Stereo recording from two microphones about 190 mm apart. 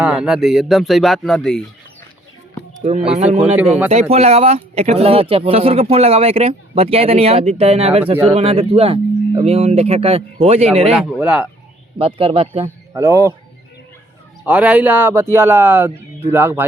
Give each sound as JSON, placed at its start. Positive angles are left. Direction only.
{"t": 0.0, "sound": "speech", "side_deg": -5}
{"t": 3.3, "sound": "speech", "side_deg": -5}
{"t": 4.1, "sound": "speech", "side_deg": -35}
{"t": 11.2, "sound": "speech", "side_deg": -5}
{"t": 11.9, "sound": "speech", "side_deg": -30}
{"t": 12.6, "sound": "speech", "side_deg": -15}
{"t": 14.4, "sound": "speech", "side_deg": -5}